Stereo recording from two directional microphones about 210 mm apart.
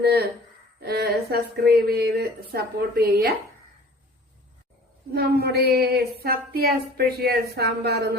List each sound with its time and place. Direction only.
0.0 s speech: 50° right (ahead or behind)
5.1 s speech: 50° right (ahead or behind)